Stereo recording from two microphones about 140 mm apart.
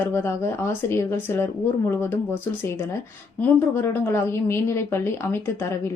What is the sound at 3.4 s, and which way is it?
A woman's voice, 15° left (ahead or behind).